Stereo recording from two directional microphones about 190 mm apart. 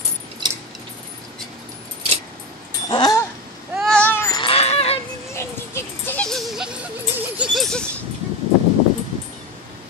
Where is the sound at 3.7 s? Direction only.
5° left (ahead or behind).